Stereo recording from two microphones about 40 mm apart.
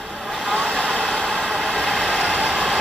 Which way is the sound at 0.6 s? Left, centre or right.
Centre.